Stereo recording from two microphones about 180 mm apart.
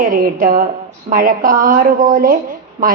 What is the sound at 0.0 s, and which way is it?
A woman's voice, 50° right (ahead or behind).